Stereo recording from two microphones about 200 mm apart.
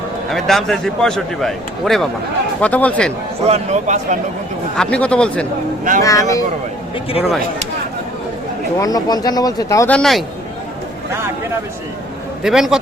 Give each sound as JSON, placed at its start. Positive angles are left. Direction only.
{"t": 0.3, "sound": "a man's voice", "side_deg": 0}
{"t": 3.4, "sound": "speech", "side_deg": -35}
{"t": 4.8, "sound": "a man's voice", "side_deg": 5}
{"t": 6.0, "sound": "speech", "side_deg": 15}
{"t": 8.8, "sound": "speech", "side_deg": 20}
{"t": 12.4, "sound": "a man's voice", "side_deg": 0}